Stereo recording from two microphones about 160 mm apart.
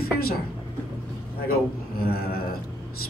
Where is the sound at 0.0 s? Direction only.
70° left (ahead or behind).